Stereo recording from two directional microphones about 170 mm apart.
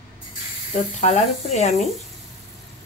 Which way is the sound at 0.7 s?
40° left (ahead or behind).